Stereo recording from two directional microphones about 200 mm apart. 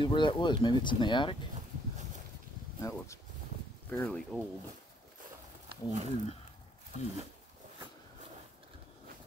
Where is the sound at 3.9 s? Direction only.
5° left (ahead or behind).